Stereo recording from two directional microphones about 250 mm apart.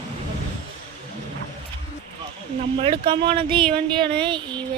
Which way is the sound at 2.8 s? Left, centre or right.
Right.